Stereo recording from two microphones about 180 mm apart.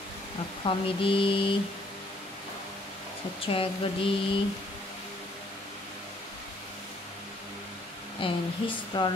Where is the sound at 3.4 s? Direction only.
30° left (ahead or behind).